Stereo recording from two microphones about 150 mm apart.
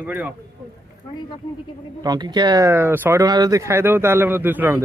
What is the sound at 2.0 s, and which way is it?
Speech, 30° right (ahead or behind).